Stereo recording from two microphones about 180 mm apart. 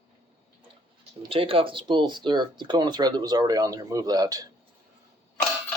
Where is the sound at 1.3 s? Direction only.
30° right (ahead or behind).